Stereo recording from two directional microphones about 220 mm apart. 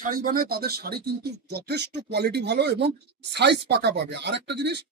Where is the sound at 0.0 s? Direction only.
40° right (ahead or behind).